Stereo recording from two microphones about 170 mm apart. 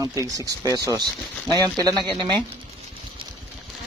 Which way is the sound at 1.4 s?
5° left (ahead or behind).